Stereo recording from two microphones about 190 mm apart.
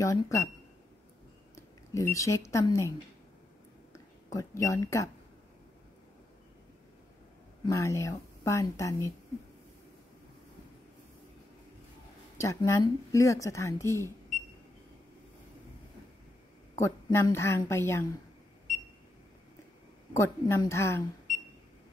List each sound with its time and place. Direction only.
0.0 s speech: 15° left (ahead or behind)
1.5 s speech: 15° left (ahead or behind)
4.3 s speech: 15° left (ahead or behind)
7.6 s speech: 15° left (ahead or behind)
12.4 s speech: 15° left (ahead or behind)
16.8 s speech: 15° left (ahead or behind)
20.2 s speech: 15° left (ahead or behind)